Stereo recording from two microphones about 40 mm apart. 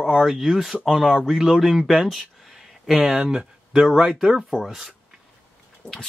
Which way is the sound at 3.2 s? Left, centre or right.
Right.